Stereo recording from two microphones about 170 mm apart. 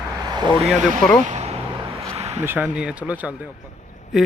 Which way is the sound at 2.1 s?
40° right (ahead or behind).